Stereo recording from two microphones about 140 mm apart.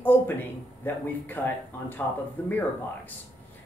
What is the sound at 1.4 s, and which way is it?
Speech, 15° left (ahead or behind).